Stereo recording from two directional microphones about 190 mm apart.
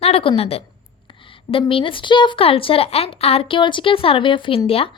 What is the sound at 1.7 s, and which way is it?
A woman's voice, 25° left (ahead or behind).